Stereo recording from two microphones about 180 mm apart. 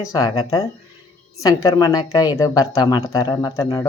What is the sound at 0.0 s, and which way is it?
Speech, 20° left (ahead or behind).